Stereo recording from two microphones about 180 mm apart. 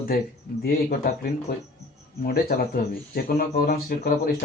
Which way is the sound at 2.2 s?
55° left (ahead or behind).